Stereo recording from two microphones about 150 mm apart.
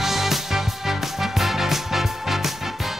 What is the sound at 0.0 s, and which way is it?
Music, centre (ahead or behind).